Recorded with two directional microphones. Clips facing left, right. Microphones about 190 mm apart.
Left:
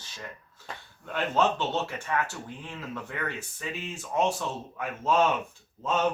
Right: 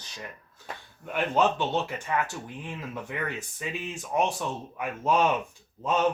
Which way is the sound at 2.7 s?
15° right (ahead or behind).